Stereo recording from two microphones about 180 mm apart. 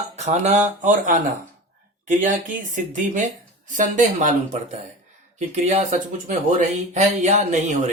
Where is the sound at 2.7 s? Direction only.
45° right (ahead or behind).